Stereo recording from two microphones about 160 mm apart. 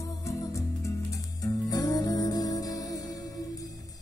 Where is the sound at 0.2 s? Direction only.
20° left (ahead or behind).